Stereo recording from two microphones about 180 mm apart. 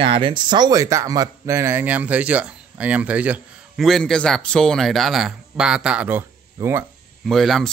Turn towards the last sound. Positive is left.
turn(degrees=0)  # may be behind; listen again after turning